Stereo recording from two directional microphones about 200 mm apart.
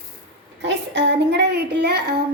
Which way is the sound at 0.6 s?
60° right (ahead or behind).